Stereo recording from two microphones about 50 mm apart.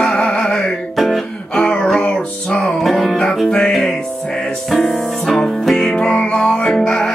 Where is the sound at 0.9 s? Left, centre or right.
Centre.